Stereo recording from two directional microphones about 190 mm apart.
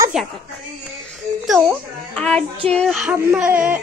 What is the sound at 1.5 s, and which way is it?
A child's voice, centre (ahead or behind).